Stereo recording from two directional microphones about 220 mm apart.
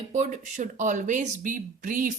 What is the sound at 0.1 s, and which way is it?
Speech, 35° right (ahead or behind).